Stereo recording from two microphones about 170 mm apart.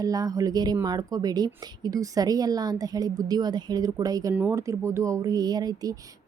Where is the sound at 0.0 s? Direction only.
20° right (ahead or behind).